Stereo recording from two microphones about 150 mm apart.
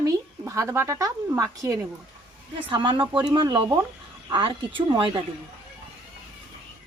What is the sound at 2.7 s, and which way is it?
Speech, 30° right (ahead or behind).